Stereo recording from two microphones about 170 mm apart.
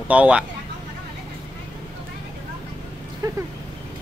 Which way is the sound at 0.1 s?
5° right (ahead or behind).